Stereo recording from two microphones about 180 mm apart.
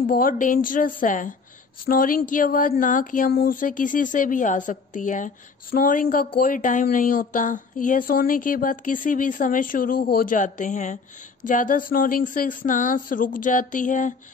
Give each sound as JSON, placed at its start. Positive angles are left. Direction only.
{"t": 0.0, "sound": "speech", "side_deg": 50}